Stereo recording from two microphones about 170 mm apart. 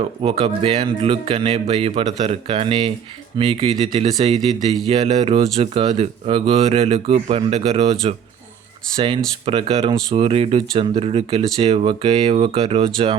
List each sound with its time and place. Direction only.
0.2 s speech: 35° right (ahead or behind)
9.0 s speech: 30° right (ahead or behind)